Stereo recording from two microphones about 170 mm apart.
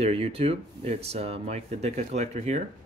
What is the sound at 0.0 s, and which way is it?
Speech, 35° right (ahead or behind).